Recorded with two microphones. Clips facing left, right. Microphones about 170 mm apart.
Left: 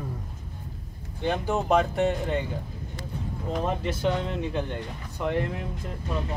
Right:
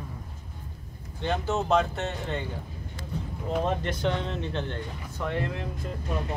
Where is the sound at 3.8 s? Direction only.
5° left (ahead or behind).